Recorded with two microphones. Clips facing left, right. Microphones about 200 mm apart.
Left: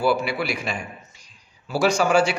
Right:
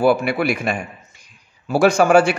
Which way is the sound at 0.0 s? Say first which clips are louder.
Right 5 dB; 55° right (ahead or behind).